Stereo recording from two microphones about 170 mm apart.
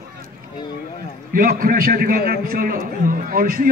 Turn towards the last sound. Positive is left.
turn(degrees=-60)  # may be behind; listen again after turning